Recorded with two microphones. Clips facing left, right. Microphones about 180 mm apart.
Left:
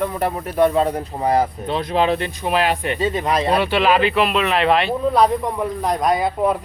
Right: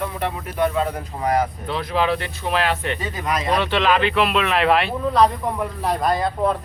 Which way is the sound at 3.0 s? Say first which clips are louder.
Left 6 dB; 25° left (ahead or behind).